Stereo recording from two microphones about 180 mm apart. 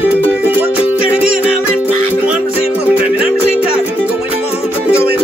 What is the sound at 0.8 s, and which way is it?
Music, 30° left (ahead or behind).